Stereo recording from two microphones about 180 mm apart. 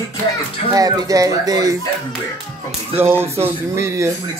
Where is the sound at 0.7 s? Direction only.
20° right (ahead or behind).